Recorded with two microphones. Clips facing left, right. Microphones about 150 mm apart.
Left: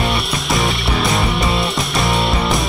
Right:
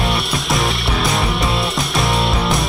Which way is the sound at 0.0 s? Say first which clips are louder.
Even; centre (ahead or behind).